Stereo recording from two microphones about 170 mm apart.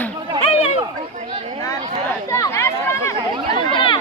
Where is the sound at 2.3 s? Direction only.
15° left (ahead or behind).